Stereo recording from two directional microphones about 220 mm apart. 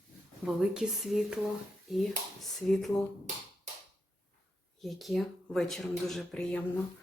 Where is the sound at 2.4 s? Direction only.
Centre (ahead or behind).